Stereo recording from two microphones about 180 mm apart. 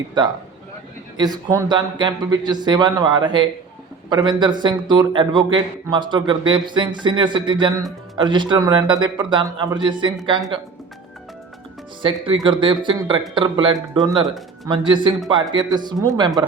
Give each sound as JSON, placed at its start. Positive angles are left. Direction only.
{"t": 0.2, "sound": "a man's voice", "side_deg": -25}
{"t": 12.0, "sound": "a man's voice", "side_deg": -30}